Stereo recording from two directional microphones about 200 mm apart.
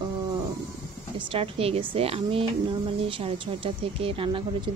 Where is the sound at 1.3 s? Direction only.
30° right (ahead or behind).